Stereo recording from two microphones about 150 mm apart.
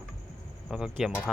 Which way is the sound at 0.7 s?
5° right (ahead or behind).